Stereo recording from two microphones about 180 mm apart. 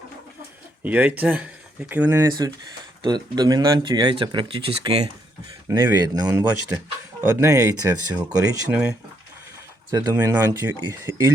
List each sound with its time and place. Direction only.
0.8 s speech: 10° right (ahead or behind)
8.7 s speech: 5° right (ahead or behind)